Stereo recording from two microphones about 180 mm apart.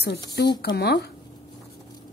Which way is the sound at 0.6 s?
65° left (ahead or behind).